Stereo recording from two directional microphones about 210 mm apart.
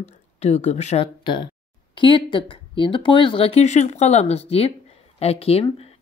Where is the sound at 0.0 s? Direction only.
30° left (ahead or behind).